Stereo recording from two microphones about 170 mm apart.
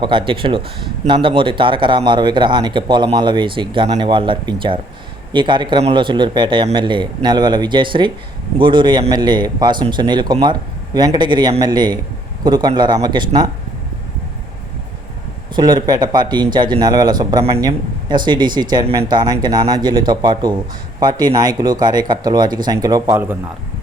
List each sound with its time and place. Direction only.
0.0 s speech: 30° right (ahead or behind)
15.5 s speech: 25° right (ahead or behind)